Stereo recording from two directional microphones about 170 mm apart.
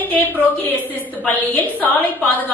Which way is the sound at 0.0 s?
10° left (ahead or behind).